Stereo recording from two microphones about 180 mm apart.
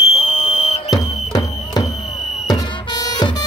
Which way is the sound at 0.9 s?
20° left (ahead or behind).